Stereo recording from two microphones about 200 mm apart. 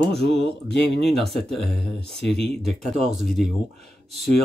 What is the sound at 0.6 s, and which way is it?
Speech, 55° left (ahead or behind).